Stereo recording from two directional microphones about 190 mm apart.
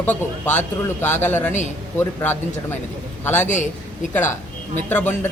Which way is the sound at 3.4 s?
40° left (ahead or behind).